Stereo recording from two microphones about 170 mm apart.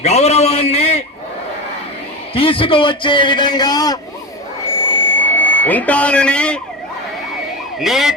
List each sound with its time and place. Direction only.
0.0 s a sound: 40° left (ahead or behind)
2.3 s a man's voice: 30° left (ahead or behind)
5.1 s speech: 10° left (ahead or behind)
7.8 s ambulance: centre (ahead or behind)